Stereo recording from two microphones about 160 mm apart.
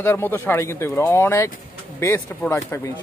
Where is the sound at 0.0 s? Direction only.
15° left (ahead or behind).